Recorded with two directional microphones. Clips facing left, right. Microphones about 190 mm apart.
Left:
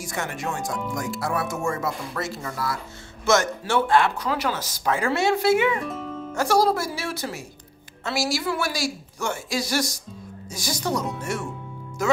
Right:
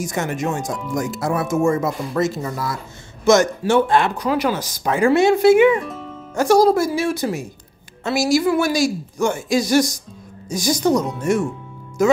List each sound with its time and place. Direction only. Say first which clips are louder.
0.0 s speech: right 7 dB; 20° right (ahead or behind)
5.8 s speech: right 2 dB; centre (ahead or behind)
6.3 s speech: right 7 dB; 20° right (ahead or behind)